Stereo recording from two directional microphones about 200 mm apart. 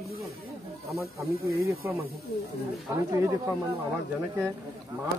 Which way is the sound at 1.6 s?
15° right (ahead or behind).